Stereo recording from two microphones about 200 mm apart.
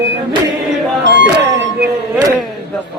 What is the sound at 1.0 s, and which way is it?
Music, 60° right (ahead or behind).